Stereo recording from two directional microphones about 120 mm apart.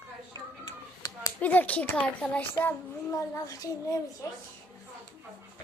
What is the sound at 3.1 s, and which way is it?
A child's voice, 25° left (ahead or behind).